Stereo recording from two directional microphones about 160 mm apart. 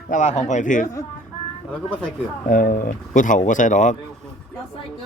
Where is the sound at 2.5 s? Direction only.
60° left (ahead or behind).